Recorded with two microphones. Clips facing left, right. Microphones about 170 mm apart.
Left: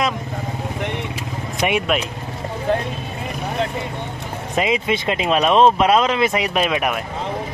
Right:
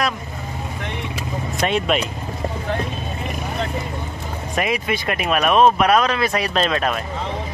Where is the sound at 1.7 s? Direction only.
10° left (ahead or behind).